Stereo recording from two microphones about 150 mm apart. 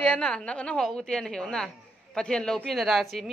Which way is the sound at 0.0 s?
5° left (ahead or behind).